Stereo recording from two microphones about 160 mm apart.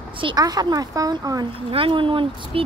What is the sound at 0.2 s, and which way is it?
A woman's voice, 25° right (ahead or behind).